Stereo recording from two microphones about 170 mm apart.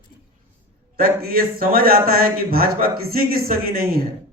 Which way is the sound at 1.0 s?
60° right (ahead or behind).